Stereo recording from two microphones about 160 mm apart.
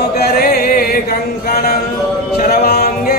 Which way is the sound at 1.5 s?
65° left (ahead or behind).